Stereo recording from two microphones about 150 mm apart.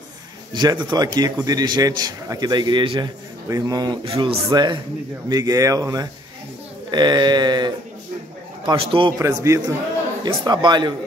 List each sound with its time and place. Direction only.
0.5 s a man's voice: 30° right (ahead or behind)
4.5 s a man's voice: 25° right (ahead or behind)
9.2 s a man's voice: 20° right (ahead or behind)